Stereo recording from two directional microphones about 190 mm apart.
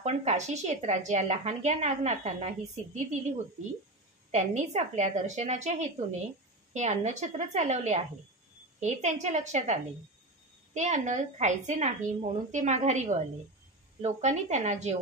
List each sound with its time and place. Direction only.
0.0 s a woman's voice: 35° right (ahead or behind)
4.3 s a woman's voice: 35° right (ahead or behind)